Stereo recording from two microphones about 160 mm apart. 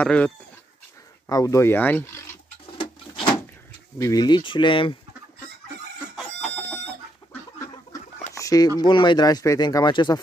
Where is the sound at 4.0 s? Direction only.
25° left (ahead or behind).